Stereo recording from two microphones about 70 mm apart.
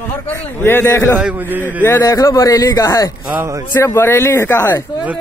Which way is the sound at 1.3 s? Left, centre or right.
Right.